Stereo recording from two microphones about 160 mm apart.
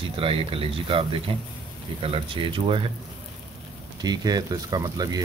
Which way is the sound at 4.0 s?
25° right (ahead or behind).